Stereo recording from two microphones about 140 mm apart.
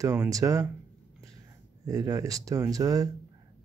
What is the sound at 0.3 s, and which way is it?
Speech, 25° right (ahead or behind).